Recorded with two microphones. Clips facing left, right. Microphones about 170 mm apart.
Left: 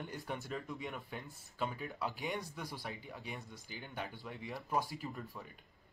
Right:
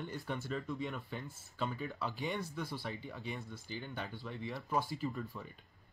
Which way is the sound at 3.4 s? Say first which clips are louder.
Right 5 dB; 15° left (ahead or behind).